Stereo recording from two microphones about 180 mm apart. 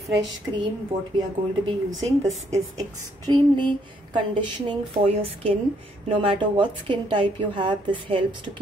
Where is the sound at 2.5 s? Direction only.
20° right (ahead or behind).